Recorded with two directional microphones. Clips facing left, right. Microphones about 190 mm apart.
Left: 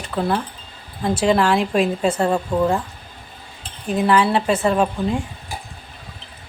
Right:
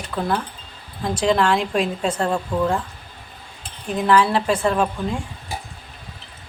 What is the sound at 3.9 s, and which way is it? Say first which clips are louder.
A woman's voice: left 1 dB; 5° left (ahead or behind).